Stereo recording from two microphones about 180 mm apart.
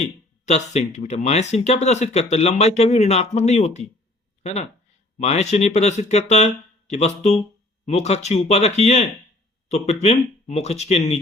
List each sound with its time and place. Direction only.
0.0 s speech: 40° left (ahead or behind)
5.1 s speech: 35° left (ahead or behind)